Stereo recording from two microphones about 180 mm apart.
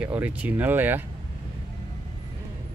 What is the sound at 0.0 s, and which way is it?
Speech, 10° right (ahead or behind).